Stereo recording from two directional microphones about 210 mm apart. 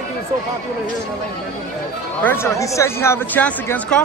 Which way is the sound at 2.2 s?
10° left (ahead or behind).